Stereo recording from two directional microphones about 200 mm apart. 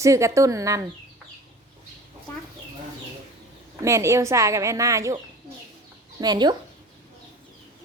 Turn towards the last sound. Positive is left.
turn(degrees=-20)  # may be behind; listen again after turning